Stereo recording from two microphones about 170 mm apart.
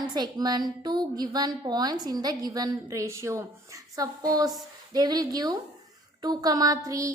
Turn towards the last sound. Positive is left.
turn(degrees=-20)  # may be behind; listen again after turning